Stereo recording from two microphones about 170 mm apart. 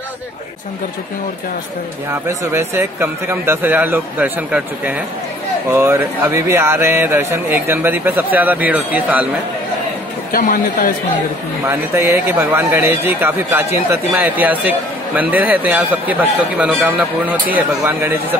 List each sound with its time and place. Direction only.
2.0 s a man's voice: 15° right (ahead or behind)
10.3 s a man's voice: 55° left (ahead or behind)
11.6 s a man's voice: 15° right (ahead or behind)